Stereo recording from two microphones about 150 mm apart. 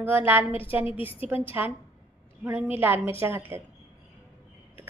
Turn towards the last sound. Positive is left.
turn(degrees=-15)  # may be behind; listen again after turning